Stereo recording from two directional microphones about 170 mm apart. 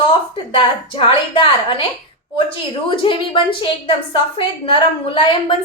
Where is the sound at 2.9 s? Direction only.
30° left (ahead or behind).